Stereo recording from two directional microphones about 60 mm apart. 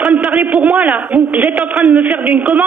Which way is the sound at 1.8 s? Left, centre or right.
Right.